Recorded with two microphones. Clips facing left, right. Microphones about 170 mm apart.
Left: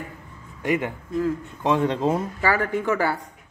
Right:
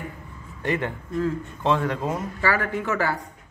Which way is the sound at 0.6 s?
10° left (ahead or behind).